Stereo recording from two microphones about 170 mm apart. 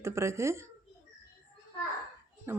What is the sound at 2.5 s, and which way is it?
Speech, 15° right (ahead or behind).